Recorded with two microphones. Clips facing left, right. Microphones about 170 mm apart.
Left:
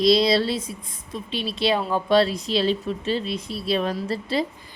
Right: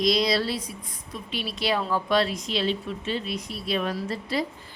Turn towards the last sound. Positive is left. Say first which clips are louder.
# left 3 dB
turn(degrees=30)  # may be behind; listen again after turning